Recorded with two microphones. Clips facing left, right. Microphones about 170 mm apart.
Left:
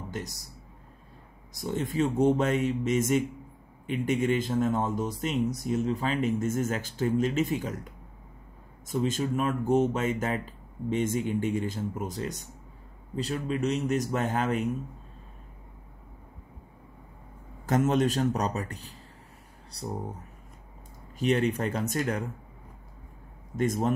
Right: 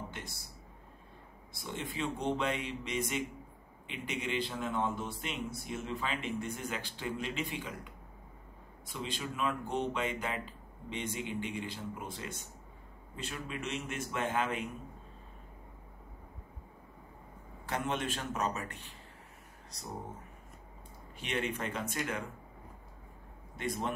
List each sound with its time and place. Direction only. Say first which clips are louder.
0.1 s a man's voice: left 9 dB; 40° left (ahead or behind)
1.5 s a man's voice: left 10 dB; 40° left (ahead or behind)
17.6 s a man's voice: left 11 dB; 40° left (ahead or behind)
21.2 s a man's voice: left 10 dB; 40° left (ahead or behind)
23.5 s a man's voice: left 9 dB; 45° left (ahead or behind)